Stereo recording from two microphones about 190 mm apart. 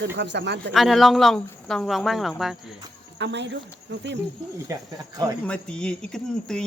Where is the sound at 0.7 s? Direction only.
Centre (ahead or behind).